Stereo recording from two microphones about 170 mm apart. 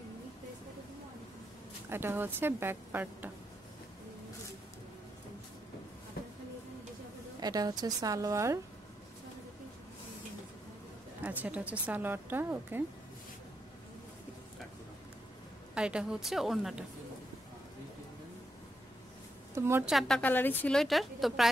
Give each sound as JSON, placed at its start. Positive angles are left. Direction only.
{"t": 1.9, "sound": "a woman's voice", "side_deg": -15}
{"t": 6.2, "sound": "a sound", "side_deg": 65}
{"t": 7.3, "sound": "a woman's voice", "side_deg": -20}
{"t": 11.2, "sound": "a woman's voice", "side_deg": -10}
{"t": 15.7, "sound": "a woman's voice", "side_deg": -5}
{"t": 19.5, "sound": "a woman's voice", "side_deg": -15}
{"t": 19.9, "sound": "a woman's voice", "side_deg": 0}